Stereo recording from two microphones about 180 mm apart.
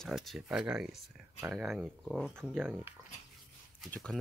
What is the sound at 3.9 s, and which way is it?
Speech, 5° left (ahead or behind).